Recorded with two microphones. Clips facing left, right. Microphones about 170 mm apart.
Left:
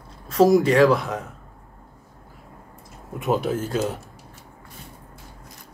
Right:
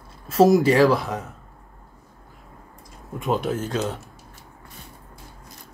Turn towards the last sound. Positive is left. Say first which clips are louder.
# left 1 dB
turn(degrees=10)  # may be behind; listen again after turning